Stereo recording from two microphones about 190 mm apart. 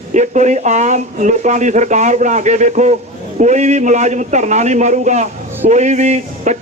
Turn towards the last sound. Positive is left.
turn(degrees=-40)  # may be behind; listen again after turning